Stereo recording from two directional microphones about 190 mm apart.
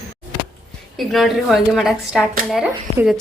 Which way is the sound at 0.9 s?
Centre (ahead or behind).